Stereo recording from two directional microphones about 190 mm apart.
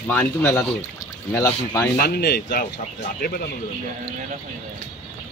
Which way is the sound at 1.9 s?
55° left (ahead or behind).